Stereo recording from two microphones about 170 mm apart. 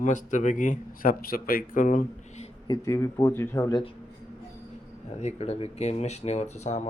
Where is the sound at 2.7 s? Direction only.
15° left (ahead or behind).